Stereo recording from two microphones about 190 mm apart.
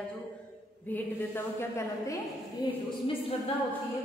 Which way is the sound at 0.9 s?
10° left (ahead or behind).